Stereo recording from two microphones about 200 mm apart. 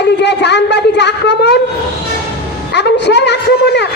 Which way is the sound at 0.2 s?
60° left (ahead or behind).